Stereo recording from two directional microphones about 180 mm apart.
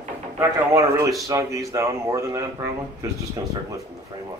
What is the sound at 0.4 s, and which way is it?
Speech, 20° right (ahead or behind).